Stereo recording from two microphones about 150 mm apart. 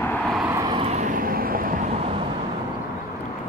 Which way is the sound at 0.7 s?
45° right (ahead or behind).